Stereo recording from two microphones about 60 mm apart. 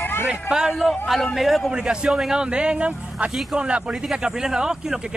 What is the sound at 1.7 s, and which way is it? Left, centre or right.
Speech, centre.